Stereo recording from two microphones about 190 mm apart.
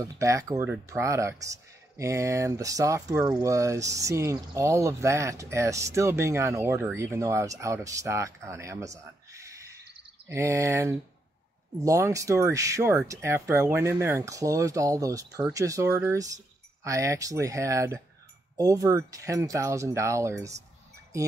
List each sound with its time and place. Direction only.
0.2 s speech: 15° right (ahead or behind)